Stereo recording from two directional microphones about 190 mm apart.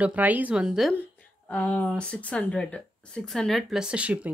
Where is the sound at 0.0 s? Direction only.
10° right (ahead or behind).